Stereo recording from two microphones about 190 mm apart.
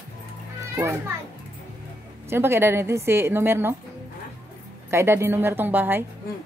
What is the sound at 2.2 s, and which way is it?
A woman's voice, 10° right (ahead or behind).